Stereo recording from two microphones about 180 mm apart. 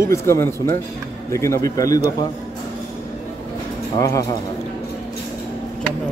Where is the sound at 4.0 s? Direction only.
15° left (ahead or behind).